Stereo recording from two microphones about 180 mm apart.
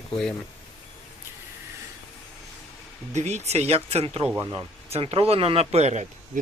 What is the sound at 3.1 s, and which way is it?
Speech, 40° right (ahead or behind).